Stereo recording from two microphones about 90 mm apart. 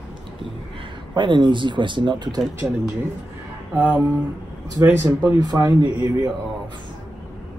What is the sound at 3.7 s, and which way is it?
Music, 25° right (ahead or behind).